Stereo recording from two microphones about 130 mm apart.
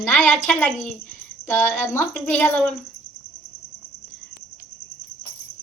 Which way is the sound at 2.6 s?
5° left (ahead or behind).